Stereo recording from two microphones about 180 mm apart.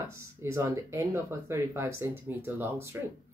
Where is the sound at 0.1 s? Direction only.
15° right (ahead or behind).